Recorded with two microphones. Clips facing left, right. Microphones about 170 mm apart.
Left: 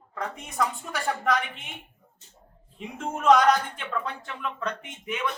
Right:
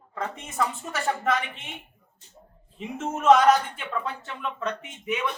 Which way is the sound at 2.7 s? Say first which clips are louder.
Right 2 dB; 5° right (ahead or behind).